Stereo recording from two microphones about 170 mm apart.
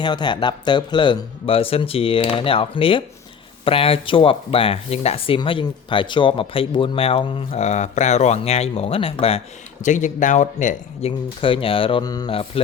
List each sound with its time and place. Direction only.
0.0 s speech: 25° left (ahead or behind)
9.8 s speech: 45° left (ahead or behind)
11.3 s speech: 30° left (ahead or behind)